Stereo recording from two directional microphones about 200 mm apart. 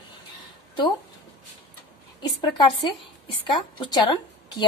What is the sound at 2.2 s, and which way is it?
Speech, 20° left (ahead or behind).